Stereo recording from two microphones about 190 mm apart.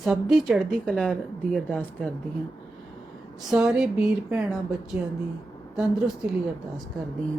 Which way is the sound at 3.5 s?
5° right (ahead or behind).